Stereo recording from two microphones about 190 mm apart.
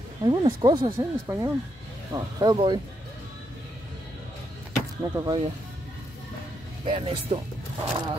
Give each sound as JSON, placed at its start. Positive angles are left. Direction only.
{"t": 0.2, "sound": "speech", "side_deg": -25}
{"t": 5.1, "sound": "speech", "side_deg": -25}
{"t": 6.8, "sound": "speech", "side_deg": -35}